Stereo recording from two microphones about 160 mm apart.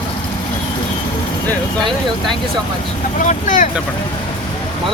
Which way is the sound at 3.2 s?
55° left (ahead or behind).